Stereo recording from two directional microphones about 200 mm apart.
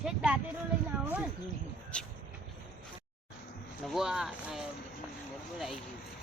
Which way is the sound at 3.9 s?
Centre (ahead or behind).